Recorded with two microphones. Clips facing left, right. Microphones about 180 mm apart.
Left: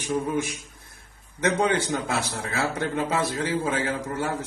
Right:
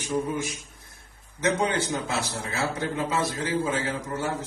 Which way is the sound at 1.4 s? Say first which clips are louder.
Left 2 dB; 60° left (ahead or behind).